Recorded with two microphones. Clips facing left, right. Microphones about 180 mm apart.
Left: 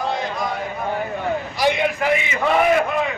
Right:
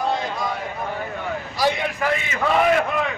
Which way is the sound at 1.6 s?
15° left (ahead or behind).